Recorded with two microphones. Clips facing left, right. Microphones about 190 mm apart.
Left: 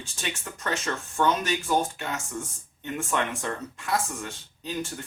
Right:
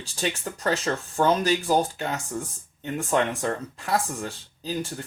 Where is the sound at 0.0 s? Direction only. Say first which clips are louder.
Right 6 dB; 35° right (ahead or behind).